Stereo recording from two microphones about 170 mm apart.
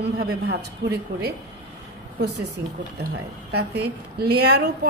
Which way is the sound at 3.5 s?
75° right (ahead or behind).